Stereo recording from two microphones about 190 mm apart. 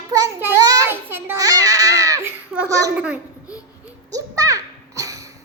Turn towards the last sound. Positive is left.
turn(degrees=-15)  # may be behind; listen again after turning